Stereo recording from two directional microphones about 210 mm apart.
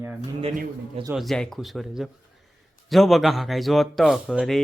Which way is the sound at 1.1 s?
Centre (ahead or behind).